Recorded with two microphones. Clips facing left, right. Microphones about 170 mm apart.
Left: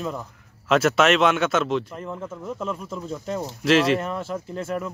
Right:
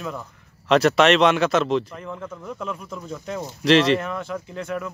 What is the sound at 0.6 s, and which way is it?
Speech, centre (ahead or behind).